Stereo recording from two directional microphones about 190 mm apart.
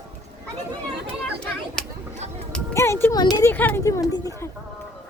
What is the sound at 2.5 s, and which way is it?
Speech, 15° left (ahead or behind).